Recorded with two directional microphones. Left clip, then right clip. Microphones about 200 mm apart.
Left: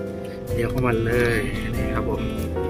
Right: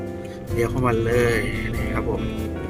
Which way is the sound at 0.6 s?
20° right (ahead or behind).